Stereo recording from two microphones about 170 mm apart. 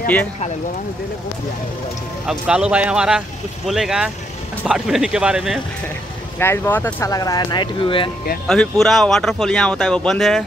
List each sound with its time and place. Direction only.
2.2 s speech: 5° right (ahead or behind)
6.4 s speech: 15° left (ahead or behind); by 8.1 s 30° left (ahead or behind)
8.5 s speech: centre (ahead or behind)